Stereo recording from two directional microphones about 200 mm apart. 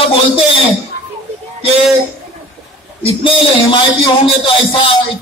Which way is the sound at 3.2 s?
25° left (ahead or behind).